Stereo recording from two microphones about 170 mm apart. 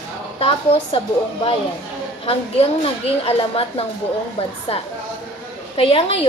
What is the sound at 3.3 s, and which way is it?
Speech, 35° left (ahead or behind).